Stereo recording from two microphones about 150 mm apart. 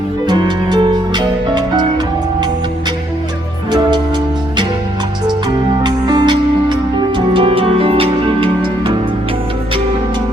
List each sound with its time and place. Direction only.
0.3 s music: 30° right (ahead or behind)
3.7 s music: 30° right (ahead or behind)
5.5 s music: 25° right (ahead or behind)